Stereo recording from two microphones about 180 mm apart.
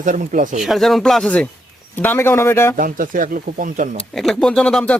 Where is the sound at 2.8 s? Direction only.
50° right (ahead or behind).